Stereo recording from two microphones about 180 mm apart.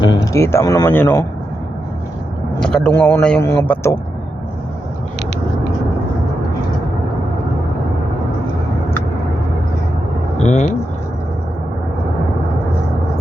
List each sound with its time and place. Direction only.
0.0 s speech: 25° left (ahead or behind)
0.3 s speech: 15° left (ahead or behind)
2.6 s speech: 5° left (ahead or behind)
10.3 s vehicle: 40° left (ahead or behind)